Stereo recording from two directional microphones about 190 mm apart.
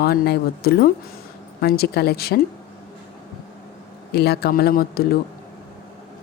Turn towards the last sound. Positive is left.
turn(degrees=55)  # may be behind; listen again after turning